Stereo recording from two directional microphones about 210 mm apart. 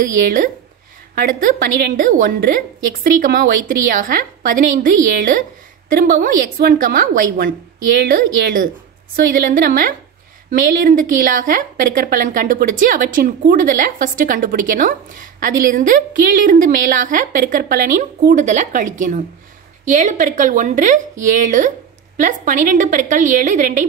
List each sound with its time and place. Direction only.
0.0 s a woman's voice: 40° right (ahead or behind)